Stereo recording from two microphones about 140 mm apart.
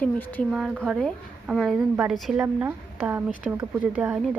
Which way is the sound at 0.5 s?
5° right (ahead or behind).